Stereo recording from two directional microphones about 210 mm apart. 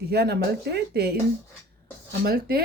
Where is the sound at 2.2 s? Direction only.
45° right (ahead or behind).